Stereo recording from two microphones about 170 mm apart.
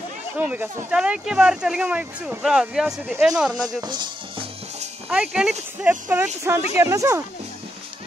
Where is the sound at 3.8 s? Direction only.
25° right (ahead or behind).